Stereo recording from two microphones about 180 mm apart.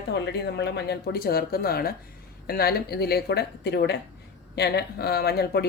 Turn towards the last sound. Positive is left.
turn(degrees=60)  # may be behind; listen again after turning